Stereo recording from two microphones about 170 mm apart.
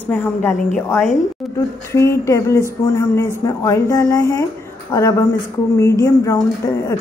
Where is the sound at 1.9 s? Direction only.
15° left (ahead or behind).